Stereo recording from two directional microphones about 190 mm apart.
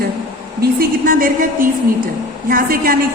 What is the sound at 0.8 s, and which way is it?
Speech, 45° right (ahead or behind).